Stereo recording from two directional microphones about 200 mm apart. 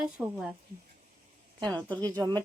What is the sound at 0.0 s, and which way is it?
Speech, 5° right (ahead or behind).